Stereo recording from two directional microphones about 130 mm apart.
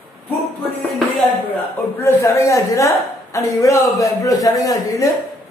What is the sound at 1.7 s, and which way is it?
A woman's voice, 15° left (ahead or behind).